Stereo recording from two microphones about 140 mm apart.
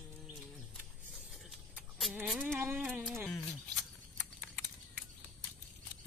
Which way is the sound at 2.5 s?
15° right (ahead or behind).